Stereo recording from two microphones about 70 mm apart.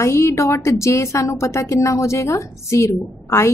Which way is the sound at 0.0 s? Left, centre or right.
Left.